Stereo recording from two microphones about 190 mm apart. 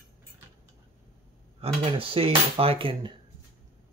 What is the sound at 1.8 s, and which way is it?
Speech, 30° right (ahead or behind).